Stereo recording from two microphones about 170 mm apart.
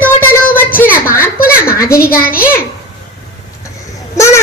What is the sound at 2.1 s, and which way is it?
Speech, 60° left (ahead or behind).